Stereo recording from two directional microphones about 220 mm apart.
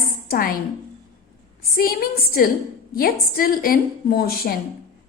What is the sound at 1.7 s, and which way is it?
A woman's voice, 40° left (ahead or behind).